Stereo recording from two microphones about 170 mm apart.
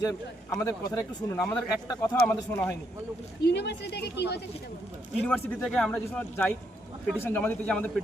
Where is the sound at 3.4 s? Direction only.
85° left.